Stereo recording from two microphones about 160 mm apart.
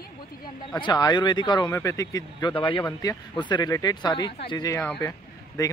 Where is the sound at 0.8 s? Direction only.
25° left (ahead or behind).